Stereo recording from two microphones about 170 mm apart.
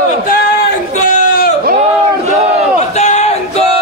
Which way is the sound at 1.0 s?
45° left (ahead or behind).